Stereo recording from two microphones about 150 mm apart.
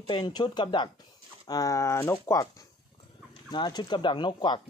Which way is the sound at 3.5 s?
30° left (ahead or behind).